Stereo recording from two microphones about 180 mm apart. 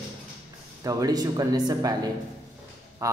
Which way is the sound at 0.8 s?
20° right (ahead or behind).